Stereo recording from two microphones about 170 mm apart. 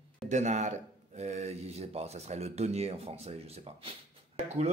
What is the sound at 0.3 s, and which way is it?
Speech, 45° right (ahead or behind).